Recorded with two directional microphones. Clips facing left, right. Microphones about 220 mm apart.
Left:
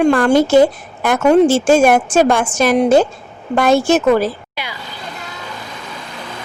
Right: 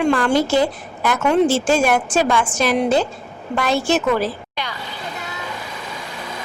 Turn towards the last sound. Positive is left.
turn(degrees=10)  # may be behind; listen again after turning